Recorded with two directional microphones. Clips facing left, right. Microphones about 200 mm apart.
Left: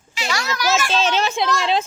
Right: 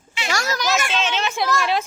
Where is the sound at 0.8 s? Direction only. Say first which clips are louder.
Left 4 dB; 35° left (ahead or behind).